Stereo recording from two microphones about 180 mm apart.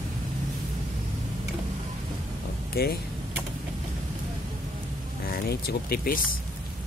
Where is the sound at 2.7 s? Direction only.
60° left (ahead or behind).